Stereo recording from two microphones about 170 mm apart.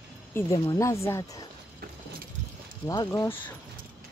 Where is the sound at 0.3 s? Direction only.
15° left (ahead or behind).